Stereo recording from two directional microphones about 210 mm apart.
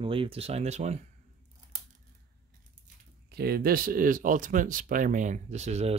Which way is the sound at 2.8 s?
45° right (ahead or behind).